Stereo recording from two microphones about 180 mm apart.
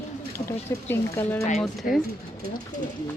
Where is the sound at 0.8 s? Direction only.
10° left (ahead or behind).